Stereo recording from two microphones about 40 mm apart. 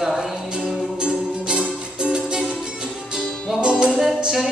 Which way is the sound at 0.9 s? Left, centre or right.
Right.